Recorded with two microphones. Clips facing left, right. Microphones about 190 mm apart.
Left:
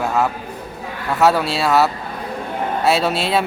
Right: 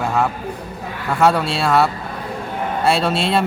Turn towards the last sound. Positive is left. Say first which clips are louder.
# even
turn(degrees=5)  # may be behind; listen again after turning